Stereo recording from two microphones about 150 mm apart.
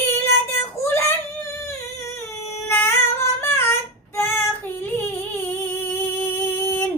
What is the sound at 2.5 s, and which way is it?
Singing, 15° left (ahead or behind).